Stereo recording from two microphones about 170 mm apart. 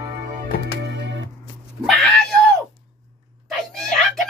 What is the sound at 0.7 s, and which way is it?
Music, 85° right.